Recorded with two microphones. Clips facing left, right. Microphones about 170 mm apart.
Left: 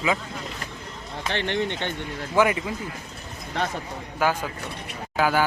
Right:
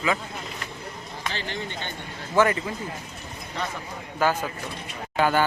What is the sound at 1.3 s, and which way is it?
Speech, 65° left (ahead or behind).